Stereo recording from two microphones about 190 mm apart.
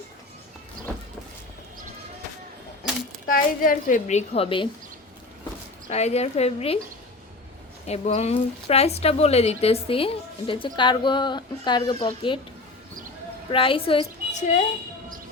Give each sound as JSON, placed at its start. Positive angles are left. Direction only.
{"t": 3.2, "sound": "a woman's voice", "side_deg": 50}
{"t": 5.9, "sound": "a woman's voice", "side_deg": 35}
{"t": 7.9, "sound": "a woman's voice", "side_deg": 35}
{"t": 13.5, "sound": "a woman's voice", "side_deg": 30}